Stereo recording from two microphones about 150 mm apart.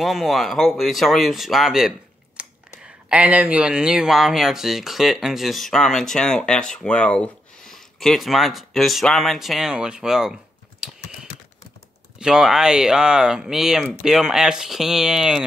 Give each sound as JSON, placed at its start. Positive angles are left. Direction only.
{"t": 0.0, "sound": "speech", "side_deg": 0}
{"t": 10.8, "sound": "typing", "side_deg": -5}
{"t": 12.2, "sound": "speech", "side_deg": -5}